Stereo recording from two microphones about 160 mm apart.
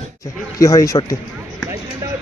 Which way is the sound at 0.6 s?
20° left (ahead or behind).